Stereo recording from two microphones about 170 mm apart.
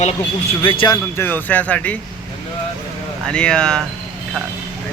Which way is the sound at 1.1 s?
10° left (ahead or behind).